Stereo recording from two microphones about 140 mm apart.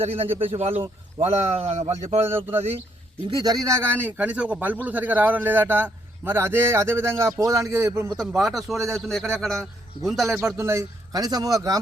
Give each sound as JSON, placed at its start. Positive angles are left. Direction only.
{"t": 0.0, "sound": "a man's voice", "side_deg": -45}
{"t": 2.2, "sound": "a man's voice", "side_deg": -15}
{"t": 3.2, "sound": "speech", "side_deg": -25}
{"t": 4.0, "sound": "a man's voice", "side_deg": -10}
{"t": 8.4, "sound": "a man's voice", "side_deg": 0}
{"t": 10.3, "sound": "speech", "side_deg": -20}